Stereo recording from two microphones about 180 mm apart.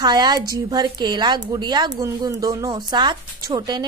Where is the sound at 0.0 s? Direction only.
25° right (ahead or behind).